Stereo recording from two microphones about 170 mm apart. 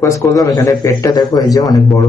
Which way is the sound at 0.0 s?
20° left (ahead or behind).